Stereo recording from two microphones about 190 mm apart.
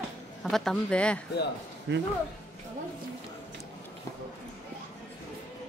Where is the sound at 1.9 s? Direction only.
70° right (ahead or behind).